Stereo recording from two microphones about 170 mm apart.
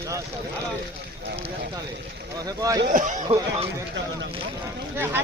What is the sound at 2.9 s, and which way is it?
Speech, 50° right (ahead or behind).